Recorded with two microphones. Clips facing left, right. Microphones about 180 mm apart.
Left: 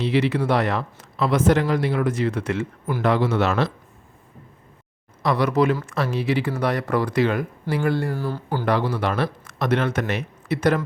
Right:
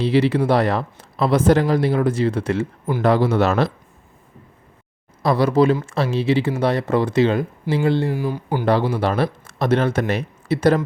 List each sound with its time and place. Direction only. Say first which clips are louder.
0.0 s speech: right 4 dB; 30° right (ahead or behind)
5.2 s speech: right 4 dB; 30° right (ahead or behind); by 8.6 s 15° right (ahead or behind)
8.6 s speech: right 4 dB; 30° right (ahead or behind)